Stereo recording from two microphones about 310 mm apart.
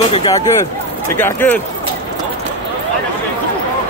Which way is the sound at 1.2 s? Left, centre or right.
Centre.